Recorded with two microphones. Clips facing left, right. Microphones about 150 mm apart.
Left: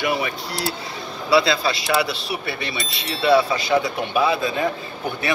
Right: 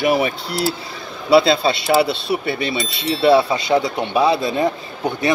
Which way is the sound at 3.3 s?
25° right (ahead or behind).